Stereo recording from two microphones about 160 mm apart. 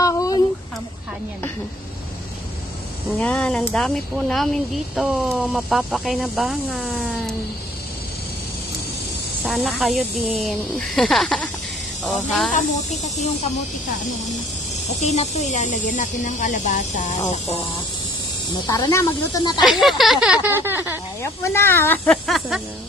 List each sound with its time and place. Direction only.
0.0 s a sound: 20° left (ahead or behind)
3.2 s speech: 5° left (ahead or behind)
9.4 s speech: centre (ahead or behind)
12.5 s speech: 45° left (ahead or behind)
15.0 s speech: 45° left (ahead or behind)
18.7 s speech: 20° left (ahead or behind)
19.6 s speech: centre (ahead or behind)
20.4 s a sound: 15° right (ahead or behind)
21.2 s speech: 15° left (ahead or behind)